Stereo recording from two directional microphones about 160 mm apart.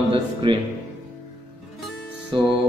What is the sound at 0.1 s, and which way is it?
Speech, 30° right (ahead or behind).